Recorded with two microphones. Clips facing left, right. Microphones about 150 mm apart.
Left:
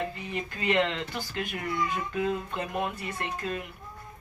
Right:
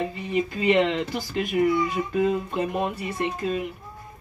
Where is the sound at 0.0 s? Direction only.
15° right (ahead or behind).